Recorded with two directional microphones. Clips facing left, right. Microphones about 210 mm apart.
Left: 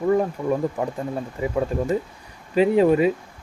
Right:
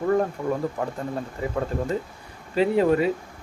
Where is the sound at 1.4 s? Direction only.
10° left (ahead or behind).